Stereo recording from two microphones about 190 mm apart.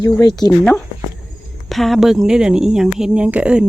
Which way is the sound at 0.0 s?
15° left (ahead or behind).